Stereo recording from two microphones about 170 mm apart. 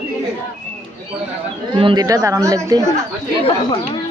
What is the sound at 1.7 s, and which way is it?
Speech, 30° right (ahead or behind).